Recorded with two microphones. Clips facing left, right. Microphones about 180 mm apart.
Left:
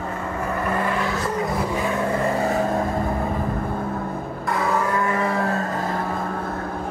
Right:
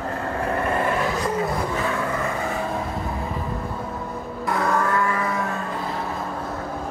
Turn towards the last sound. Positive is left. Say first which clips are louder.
# left 2 dB
turn(degrees=50)  # may be behind; listen again after turning